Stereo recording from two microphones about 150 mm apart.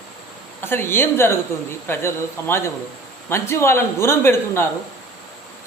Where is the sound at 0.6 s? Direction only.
15° left (ahead or behind).